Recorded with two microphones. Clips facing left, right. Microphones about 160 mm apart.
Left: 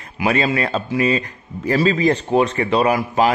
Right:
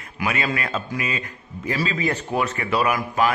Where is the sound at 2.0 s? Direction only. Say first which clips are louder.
Left 7 dB; 30° left (ahead or behind).